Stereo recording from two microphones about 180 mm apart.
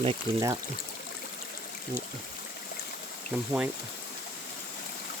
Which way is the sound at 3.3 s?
5° right (ahead or behind).